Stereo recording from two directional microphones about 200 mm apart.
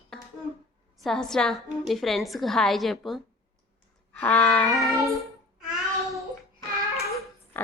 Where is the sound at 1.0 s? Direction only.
5° left (ahead or behind).